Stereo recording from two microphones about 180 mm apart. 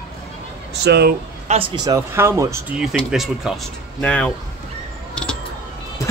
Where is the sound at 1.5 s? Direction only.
40° right (ahead or behind).